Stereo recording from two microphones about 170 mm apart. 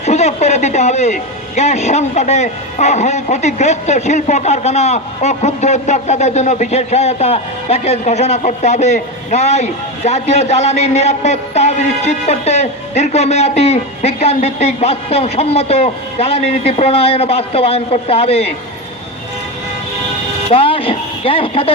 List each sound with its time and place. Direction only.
0.0 s speech: 40° left (ahead or behind)
20.5 s speech: 35° left (ahead or behind)